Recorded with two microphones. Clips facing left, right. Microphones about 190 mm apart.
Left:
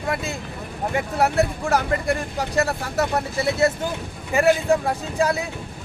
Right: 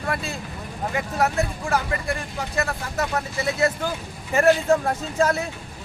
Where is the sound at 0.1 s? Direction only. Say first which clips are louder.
Left 2 dB; 20° left (ahead or behind).